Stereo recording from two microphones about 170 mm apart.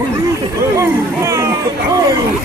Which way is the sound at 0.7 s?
15° right (ahead or behind).